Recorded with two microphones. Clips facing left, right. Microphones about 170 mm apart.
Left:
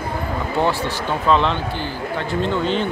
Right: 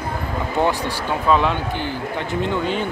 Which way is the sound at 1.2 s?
10° right (ahead or behind).